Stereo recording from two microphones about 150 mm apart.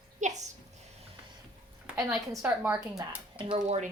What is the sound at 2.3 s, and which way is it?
Speech, 15° right (ahead or behind).